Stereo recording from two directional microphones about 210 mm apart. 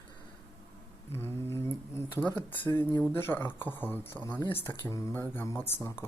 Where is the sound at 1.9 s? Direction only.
10° left (ahead or behind).